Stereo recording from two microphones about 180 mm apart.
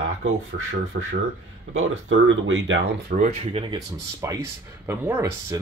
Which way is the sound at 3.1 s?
45° right (ahead or behind).